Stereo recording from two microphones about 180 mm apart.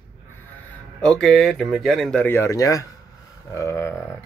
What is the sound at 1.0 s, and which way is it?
A man's voice, 5° left (ahead or behind).